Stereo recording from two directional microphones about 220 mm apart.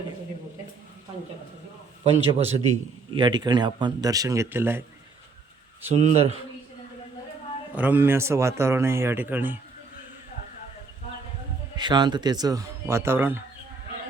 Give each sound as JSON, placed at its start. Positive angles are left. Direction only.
{"t": 2.0, "sound": "a man's voice", "side_deg": -30}
{"t": 3.2, "sound": "a man's voice", "side_deg": -20}
{"t": 5.9, "sound": "speech", "side_deg": -30}
{"t": 7.8, "sound": "a man's voice", "side_deg": -10}
{"t": 11.8, "sound": "a man's voice", "side_deg": -20}